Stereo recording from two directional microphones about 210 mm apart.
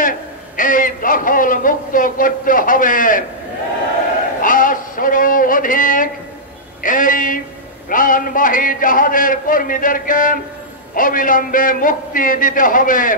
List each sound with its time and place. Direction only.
0.6 s a man's voice: 40° left (ahead or behind)
4.4 s a sound: 40° left (ahead or behind)
7.9 s a man's voice: 40° left (ahead or behind)